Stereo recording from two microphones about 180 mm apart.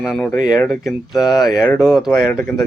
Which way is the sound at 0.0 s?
5° left (ahead or behind).